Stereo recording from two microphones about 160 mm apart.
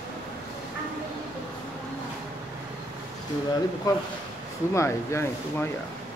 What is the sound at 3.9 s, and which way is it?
Speech, 25° left (ahead or behind).